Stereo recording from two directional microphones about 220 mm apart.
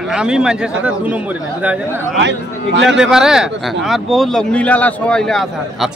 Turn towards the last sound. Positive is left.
turn(degrees=0)  # may be behind; listen again after turning